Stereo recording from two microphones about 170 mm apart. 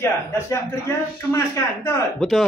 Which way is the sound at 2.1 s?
Centre (ahead or behind).